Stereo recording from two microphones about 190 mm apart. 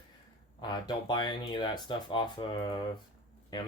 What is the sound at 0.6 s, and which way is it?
Speech, 25° left (ahead or behind).